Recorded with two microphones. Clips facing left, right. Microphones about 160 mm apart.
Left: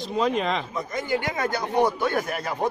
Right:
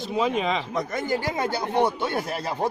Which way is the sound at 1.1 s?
30° right (ahead or behind).